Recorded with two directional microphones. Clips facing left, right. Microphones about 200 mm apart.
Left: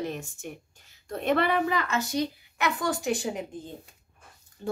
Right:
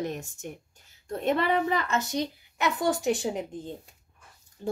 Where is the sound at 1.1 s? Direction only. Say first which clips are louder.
Even; 25° right (ahead or behind).